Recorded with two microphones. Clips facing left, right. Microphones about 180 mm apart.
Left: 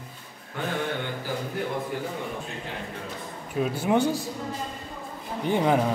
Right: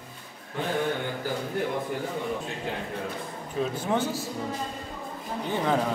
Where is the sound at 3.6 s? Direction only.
10° left (ahead or behind).